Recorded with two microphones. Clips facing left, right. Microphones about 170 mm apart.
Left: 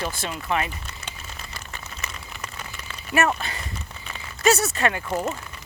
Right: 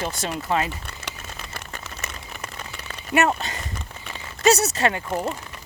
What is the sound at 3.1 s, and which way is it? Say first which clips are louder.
Speech: right 2 dB; 25° right (ahead or behind).